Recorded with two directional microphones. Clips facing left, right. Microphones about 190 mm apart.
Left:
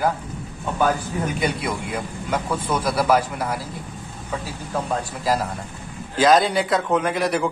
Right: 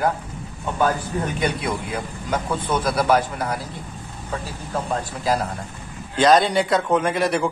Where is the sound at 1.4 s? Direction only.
5° left (ahead or behind).